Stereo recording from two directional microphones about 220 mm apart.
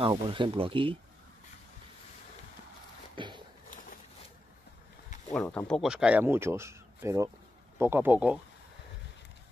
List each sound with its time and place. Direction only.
0.0 s speech: 20° right (ahead or behind)
3.2 s a sound: 20° right (ahead or behind)
5.3 s speech: 10° left (ahead or behind); by 8.4 s 5° right (ahead or behind)